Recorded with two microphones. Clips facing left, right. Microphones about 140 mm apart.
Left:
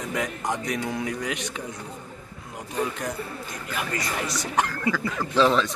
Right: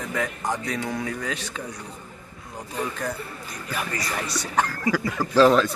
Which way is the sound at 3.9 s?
20° left (ahead or behind).